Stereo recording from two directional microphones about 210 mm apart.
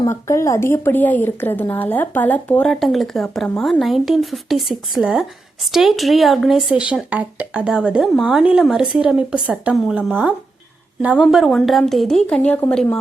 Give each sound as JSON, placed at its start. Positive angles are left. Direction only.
{"t": 0.0, "sound": "speech", "side_deg": 15}